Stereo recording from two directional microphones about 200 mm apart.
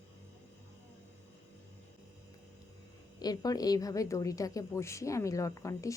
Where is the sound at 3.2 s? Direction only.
20° left (ahead or behind).